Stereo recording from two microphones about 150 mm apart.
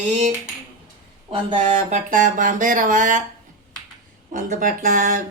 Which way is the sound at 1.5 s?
55° right (ahead or behind).